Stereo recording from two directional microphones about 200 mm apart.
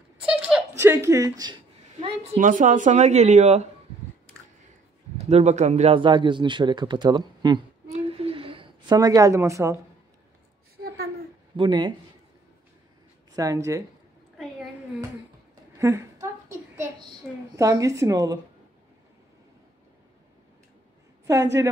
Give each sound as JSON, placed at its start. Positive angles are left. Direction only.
{"t": 0.2, "sound": "a sound", "side_deg": -5}
{"t": 2.0, "sound": "speech", "side_deg": -35}
{"t": 5.1, "sound": "a man's voice", "side_deg": -35}
{"t": 11.5, "sound": "speech", "side_deg": -25}
{"t": 13.4, "sound": "a woman's voice", "side_deg": -15}
{"t": 15.8, "sound": "a sound", "side_deg": -15}
{"t": 17.6, "sound": "a woman's voice", "side_deg": -15}